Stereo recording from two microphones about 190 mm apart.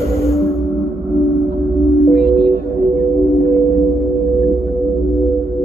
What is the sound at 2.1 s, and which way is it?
Music, 55° left (ahead or behind).